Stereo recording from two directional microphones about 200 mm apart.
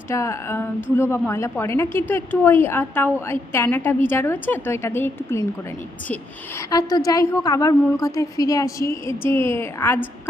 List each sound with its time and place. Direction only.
0.1 s a woman's voice: 15° left (ahead or behind)
6.7 s a woman's voice: 20° left (ahead or behind)